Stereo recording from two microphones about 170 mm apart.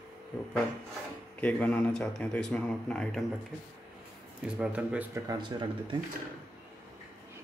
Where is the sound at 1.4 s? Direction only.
10° left (ahead or behind).